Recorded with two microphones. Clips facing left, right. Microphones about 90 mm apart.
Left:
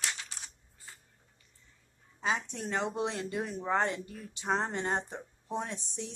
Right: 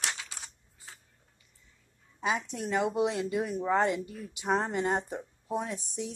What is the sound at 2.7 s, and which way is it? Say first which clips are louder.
Speech: right 5 dB; 10° right (ahead or behind).